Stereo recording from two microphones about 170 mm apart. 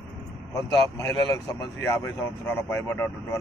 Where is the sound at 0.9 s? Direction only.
20° left (ahead or behind).